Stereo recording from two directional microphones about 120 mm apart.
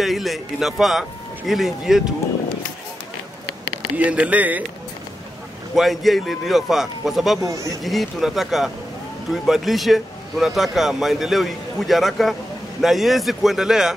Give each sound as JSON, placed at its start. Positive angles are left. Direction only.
{"t": 0.0, "sound": "a man's voice", "side_deg": 0}
{"t": 3.9, "sound": "speech", "side_deg": -10}
{"t": 5.8, "sound": "a man's voice", "side_deg": 0}
{"t": 7.4, "sound": "speech", "side_deg": -25}
{"t": 7.8, "sound": "a man's voice", "side_deg": 0}